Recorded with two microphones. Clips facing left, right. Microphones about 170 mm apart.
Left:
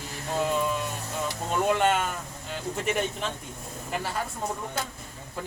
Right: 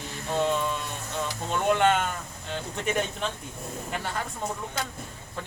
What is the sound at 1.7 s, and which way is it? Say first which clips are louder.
Speech: right 3 dB; 5° left (ahead or behind).